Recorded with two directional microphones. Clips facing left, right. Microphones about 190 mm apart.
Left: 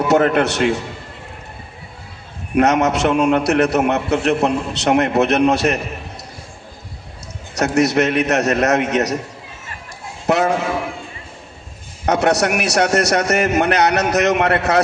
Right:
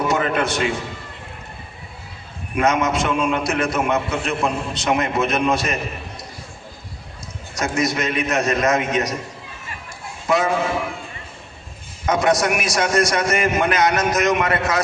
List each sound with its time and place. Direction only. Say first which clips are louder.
0.1 s a man's voice: left 6 dB; 70° left (ahead or behind)
2.6 s a man's voice: left 4 dB; 70° left (ahead or behind)
7.5 s a man's voice: left 6 dB; 70° left (ahead or behind)
10.2 s a man's voice: left 3 dB; 70° left (ahead or behind)
12.0 s a man's voice: left 2 dB; 70° left (ahead or behind)